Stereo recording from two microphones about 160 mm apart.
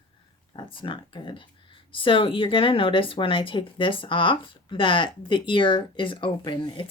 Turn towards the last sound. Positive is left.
turn(degrees=30)  # may be behind; listen again after turning